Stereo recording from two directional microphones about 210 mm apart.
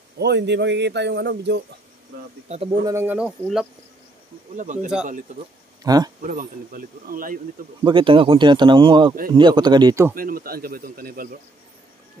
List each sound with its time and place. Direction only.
0.2 s speech: 55° right (ahead or behind)
2.4 s speech: 30° right (ahead or behind); by 3.3 s 10° right (ahead or behind)
3.3 s cricket: centre (ahead or behind)
5.9 s speech: 20° right (ahead or behind)
6.2 s a man's voice: 40° right (ahead or behind)
7.8 s speech: 25° right (ahead or behind)
10.1 s a man's voice: 45° right (ahead or behind)